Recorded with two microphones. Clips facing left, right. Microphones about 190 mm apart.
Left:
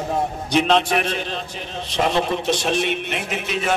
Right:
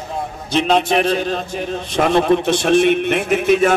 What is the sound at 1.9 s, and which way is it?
A man's voice, 55° right (ahead or behind).